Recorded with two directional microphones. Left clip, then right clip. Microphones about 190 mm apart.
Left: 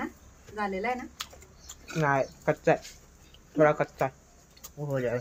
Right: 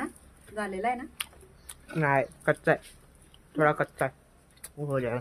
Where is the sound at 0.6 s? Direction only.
40° right (ahead or behind); by 5.2 s 25° right (ahead or behind).